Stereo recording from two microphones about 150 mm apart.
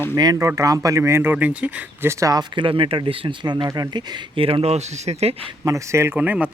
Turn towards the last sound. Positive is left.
turn(degrees=-10)  # may be behind; listen again after turning